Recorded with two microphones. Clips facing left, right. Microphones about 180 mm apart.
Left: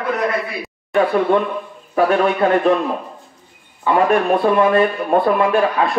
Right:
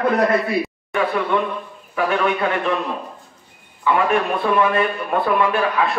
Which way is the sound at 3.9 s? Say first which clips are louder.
Left 4 dB; 35° left (ahead or behind).